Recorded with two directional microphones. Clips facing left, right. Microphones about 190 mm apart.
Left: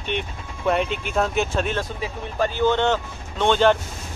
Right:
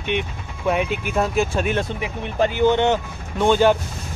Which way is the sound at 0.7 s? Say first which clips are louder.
Right 1 dB; 5° right (ahead or behind).